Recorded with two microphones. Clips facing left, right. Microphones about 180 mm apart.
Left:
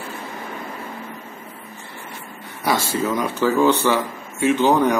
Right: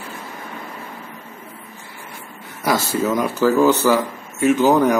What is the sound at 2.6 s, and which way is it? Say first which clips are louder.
Speech: right 2 dB; centre (ahead or behind).